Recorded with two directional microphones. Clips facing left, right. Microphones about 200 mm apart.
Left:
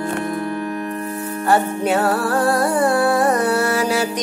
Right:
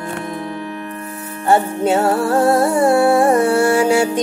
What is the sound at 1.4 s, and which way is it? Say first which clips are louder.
Music: right 3 dB; 25° right (ahead or behind).